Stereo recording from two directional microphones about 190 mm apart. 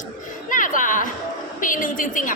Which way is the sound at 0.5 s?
45° left (ahead or behind).